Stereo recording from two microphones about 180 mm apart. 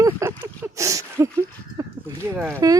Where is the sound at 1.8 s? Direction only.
15° right (ahead or behind).